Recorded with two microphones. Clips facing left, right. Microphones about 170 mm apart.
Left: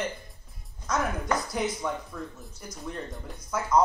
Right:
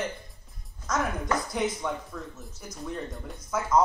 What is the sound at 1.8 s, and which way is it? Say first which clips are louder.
Speech: even; centre (ahead or behind).